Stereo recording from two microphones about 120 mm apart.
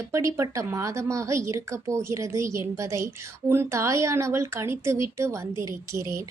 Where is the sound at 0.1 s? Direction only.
25° right (ahead or behind).